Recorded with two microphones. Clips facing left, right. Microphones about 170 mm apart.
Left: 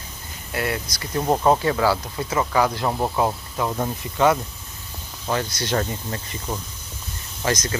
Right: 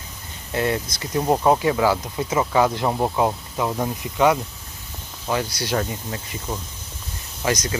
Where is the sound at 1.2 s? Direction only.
5° right (ahead or behind).